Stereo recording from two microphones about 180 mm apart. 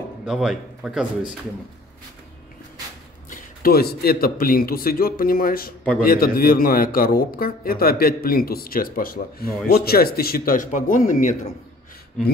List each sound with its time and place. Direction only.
0.2 s a man's voice: 5° right (ahead or behind)
3.3 s a man's voice: 55° left (ahead or behind)